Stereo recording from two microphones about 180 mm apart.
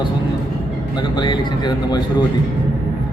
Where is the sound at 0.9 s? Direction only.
25° left (ahead or behind).